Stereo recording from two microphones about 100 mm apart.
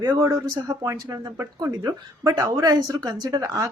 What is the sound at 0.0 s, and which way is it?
A woman's voice, 35° right (ahead or behind).